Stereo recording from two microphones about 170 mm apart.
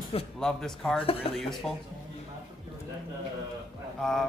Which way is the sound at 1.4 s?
Centre (ahead or behind).